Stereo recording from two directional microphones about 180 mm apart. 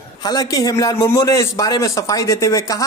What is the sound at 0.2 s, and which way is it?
A man's voice, 20° left (ahead or behind).